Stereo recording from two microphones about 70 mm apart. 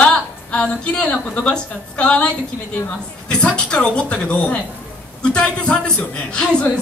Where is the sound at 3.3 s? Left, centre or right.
Centre.